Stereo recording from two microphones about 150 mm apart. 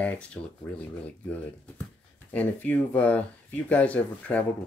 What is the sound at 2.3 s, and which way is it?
Speech, 10° left (ahead or behind).